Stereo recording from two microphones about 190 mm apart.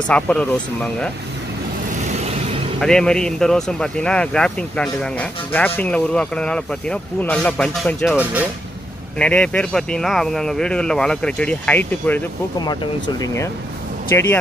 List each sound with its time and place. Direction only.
0.1 s speech: 5° left (ahead or behind)
2.8 s speech: 5° left (ahead or behind)
12.5 s speech: 20° left (ahead or behind)